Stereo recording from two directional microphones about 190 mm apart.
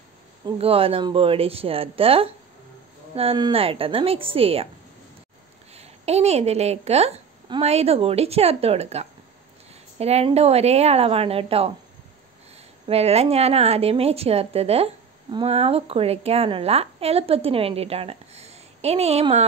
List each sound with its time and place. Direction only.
0.5 s speech: 30° right (ahead or behind)
5.7 s a woman's voice: 35° right (ahead or behind)
12.8 s a woman's voice: 35° right (ahead or behind)